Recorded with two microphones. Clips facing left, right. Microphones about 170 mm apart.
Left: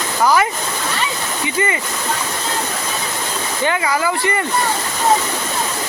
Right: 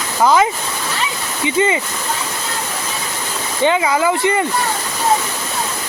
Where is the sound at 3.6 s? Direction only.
20° right (ahead or behind).